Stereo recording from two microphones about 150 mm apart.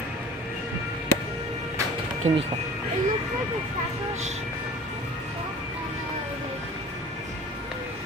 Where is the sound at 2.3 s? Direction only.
50° right (ahead or behind).